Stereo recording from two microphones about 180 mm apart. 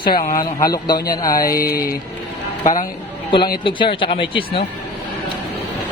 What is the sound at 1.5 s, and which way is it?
Speech, 55° left (ahead or behind).